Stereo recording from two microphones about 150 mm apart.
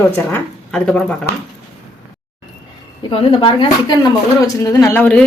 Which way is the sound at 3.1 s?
40° left (ahead or behind).